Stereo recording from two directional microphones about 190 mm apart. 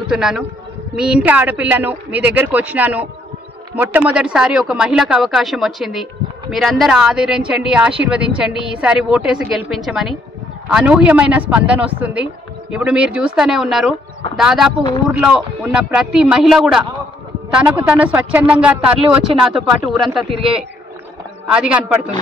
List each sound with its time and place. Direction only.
0.1 s a woman's voice: 5° right (ahead or behind)
20.3 s a man's voice: 30° right (ahead or behind)
21.5 s a woman's voice: 5° right (ahead or behind)